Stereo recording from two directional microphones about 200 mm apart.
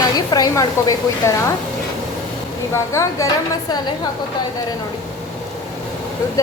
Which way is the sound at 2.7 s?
15° left (ahead or behind).